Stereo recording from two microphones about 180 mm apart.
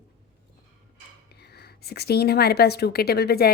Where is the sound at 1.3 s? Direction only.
65° left (ahead or behind).